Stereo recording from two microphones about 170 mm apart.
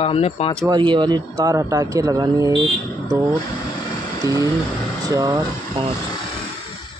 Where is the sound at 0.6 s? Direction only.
25° right (ahead or behind).